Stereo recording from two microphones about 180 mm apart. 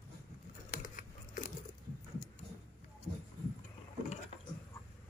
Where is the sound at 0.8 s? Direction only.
45° left (ahead or behind).